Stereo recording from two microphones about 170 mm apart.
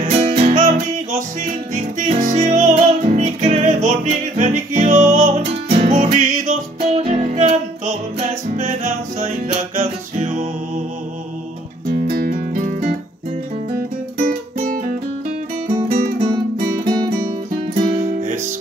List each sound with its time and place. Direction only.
0.0 s music: 40° right (ahead or behind)
11.9 s music: 60° right (ahead or behind)
16.8 s music: 30° right (ahead or behind)
17.7 s music: 50° right (ahead or behind)